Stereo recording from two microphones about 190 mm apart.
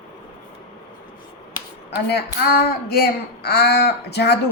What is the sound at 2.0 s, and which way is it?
Speech, 55° left (ahead or behind).